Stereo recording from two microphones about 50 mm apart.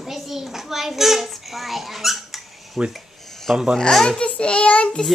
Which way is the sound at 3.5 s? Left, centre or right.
Centre.